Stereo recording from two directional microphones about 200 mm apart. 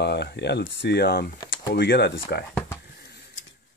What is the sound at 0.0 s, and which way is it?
Speech, 55° left (ahead or behind).